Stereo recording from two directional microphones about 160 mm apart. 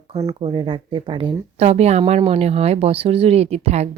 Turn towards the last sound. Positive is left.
turn(degrees=-45)  # may be behind; listen again after turning